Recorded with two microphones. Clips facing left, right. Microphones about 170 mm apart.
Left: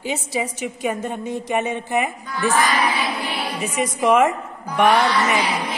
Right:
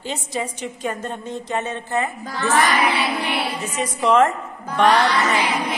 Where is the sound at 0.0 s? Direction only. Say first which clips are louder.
Left 2 dB; 10° left (ahead or behind).